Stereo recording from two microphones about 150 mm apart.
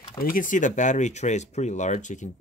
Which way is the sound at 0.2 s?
65° left (ahead or behind).